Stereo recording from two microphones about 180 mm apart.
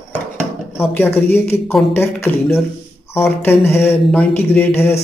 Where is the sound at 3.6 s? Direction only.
15° left (ahead or behind).